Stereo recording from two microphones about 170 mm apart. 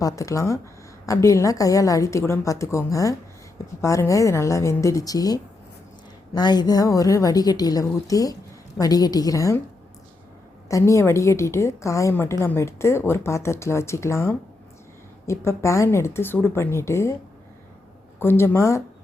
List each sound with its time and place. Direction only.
0.0 s a woman's voice: 20° left (ahead or behind)
10.7 s a woman's voice: 20° left (ahead or behind)
18.2 s a woman's voice: 15° left (ahead or behind)